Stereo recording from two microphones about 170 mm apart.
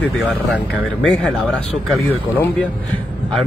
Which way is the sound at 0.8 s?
5° left (ahead or behind).